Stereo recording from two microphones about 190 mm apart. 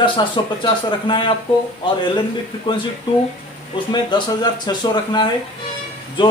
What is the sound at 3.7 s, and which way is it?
A man's voice, 25° left (ahead or behind).